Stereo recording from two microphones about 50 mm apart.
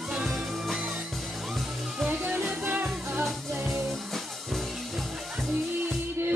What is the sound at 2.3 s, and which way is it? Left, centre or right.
Music, centre.